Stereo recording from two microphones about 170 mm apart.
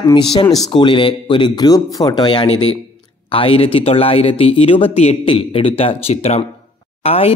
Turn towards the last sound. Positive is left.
turn(degrees=35)  # may be behind; listen again after turning